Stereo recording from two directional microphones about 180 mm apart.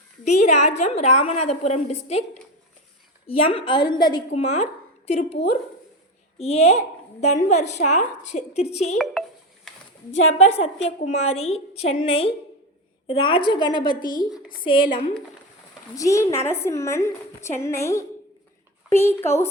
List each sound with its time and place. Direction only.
0.3 s a woman's voice: 40° left (ahead or behind)
3.4 s a woman's voice: 30° left (ahead or behind)
4.3 s speech: 40° left (ahead or behind)
6.4 s a woman's voice: 35° left (ahead or behind)
10.3 s a woman's voice: 35° left (ahead or behind)
13.9 s speech: 50° left (ahead or behind)
14.5 s a woman's voice: 25° left (ahead or behind)
14.8 s speech: 50° left (ahead or behind)
16.0 s a woman's voice: 15° left (ahead or behind)